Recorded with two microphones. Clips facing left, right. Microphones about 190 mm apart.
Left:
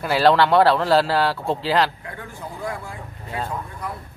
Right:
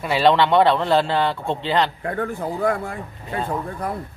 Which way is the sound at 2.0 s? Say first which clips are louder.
Right 10 dB; 55° right (ahead or behind).